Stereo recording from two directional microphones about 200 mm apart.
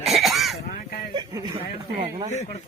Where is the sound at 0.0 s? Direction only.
Centre (ahead or behind).